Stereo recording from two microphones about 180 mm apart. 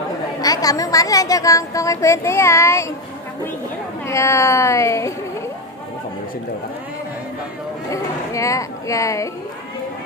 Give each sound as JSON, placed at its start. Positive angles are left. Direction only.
{"t": 0.4, "sound": "speech", "side_deg": 20}
{"t": 4.1, "sound": "speech", "side_deg": 15}
{"t": 7.9, "sound": "music", "side_deg": 15}